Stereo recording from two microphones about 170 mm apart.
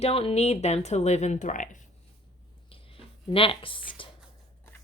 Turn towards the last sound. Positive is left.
turn(degrees=30)  # may be behind; listen again after turning